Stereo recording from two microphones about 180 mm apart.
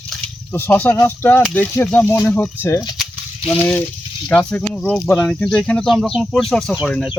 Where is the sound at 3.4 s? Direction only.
30° left (ahead or behind).